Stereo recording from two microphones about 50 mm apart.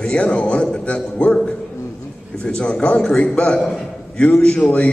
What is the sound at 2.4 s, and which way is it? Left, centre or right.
A man's voice, centre.